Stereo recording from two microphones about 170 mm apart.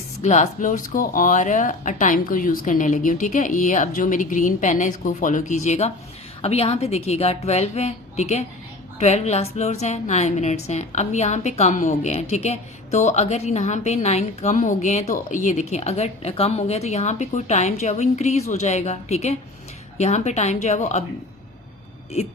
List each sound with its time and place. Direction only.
0.2 s a woman's voice: 45° left (ahead or behind)